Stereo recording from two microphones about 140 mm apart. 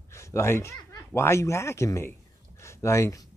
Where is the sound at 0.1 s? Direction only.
20° left (ahead or behind).